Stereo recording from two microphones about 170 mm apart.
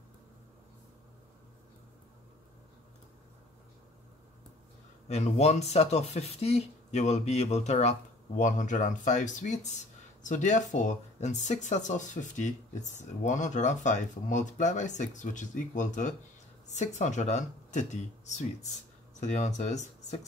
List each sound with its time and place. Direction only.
5.0 s speech: 40° left (ahead or behind)